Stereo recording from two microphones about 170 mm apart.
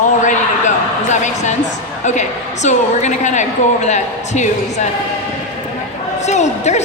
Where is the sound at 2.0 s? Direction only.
45° left (ahead or behind).